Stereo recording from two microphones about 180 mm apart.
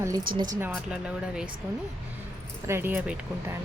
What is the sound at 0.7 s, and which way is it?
Speech, 5° right (ahead or behind).